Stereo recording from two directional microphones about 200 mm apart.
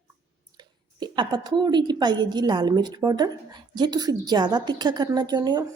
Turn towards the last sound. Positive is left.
turn(degrees=-20)  # may be behind; listen again after turning